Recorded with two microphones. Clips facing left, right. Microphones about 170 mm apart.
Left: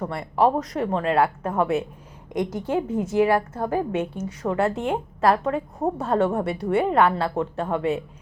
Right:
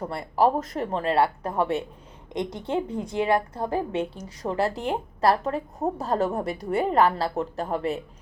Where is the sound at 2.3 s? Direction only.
10° left (ahead or behind).